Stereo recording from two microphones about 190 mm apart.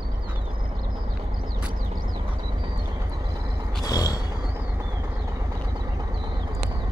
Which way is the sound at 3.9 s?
20° left (ahead or behind).